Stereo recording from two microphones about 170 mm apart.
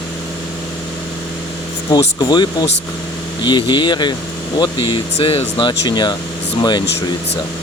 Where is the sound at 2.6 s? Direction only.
90° left.